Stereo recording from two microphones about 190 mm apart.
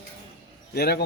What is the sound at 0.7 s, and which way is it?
Speech, 55° left (ahead or behind).